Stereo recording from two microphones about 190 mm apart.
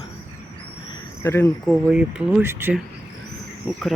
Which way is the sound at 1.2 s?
15° left (ahead or behind).